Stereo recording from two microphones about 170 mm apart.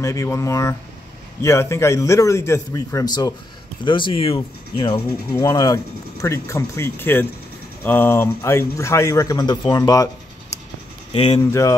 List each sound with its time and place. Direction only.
0.0 s speech: 20° left (ahead or behind)
5.3 s speech: 20° left (ahead or behind)
11.1 s speech: 35° left (ahead or behind)